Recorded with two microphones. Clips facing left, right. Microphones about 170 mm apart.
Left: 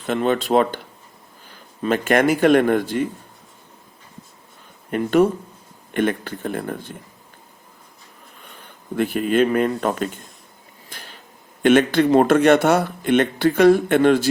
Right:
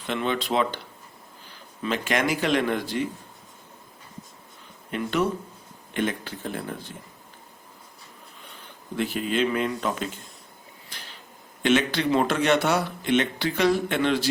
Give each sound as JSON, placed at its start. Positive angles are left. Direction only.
{"t": 0.0, "sound": "a man's voice", "side_deg": 45}
{"t": 4.9, "sound": "speech", "side_deg": 50}
{"t": 9.0, "sound": "speech", "side_deg": 55}
{"t": 10.8, "sound": "a sound", "side_deg": 50}
{"t": 11.6, "sound": "speech", "side_deg": 50}